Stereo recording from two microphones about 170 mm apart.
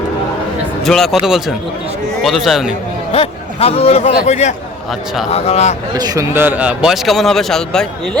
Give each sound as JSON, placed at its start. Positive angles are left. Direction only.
{"t": 0.9, "sound": "a man's voice", "side_deg": 0}
{"t": 3.1, "sound": "a man's voice", "side_deg": 35}
{"t": 4.9, "sound": "a man's voice", "side_deg": 0}
{"t": 5.3, "sound": "a man's voice", "side_deg": 40}
{"t": 6.0, "sound": "a man's voice", "side_deg": -20}